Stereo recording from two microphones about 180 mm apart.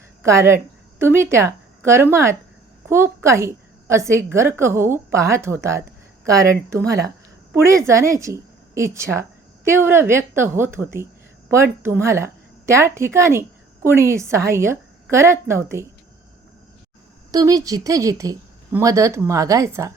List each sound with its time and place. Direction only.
0.3 s a woman's voice: 15° right (ahead or behind)
7.5 s a woman's voice: 15° right (ahead or behind)
17.3 s a woman's voice: 20° right (ahead or behind)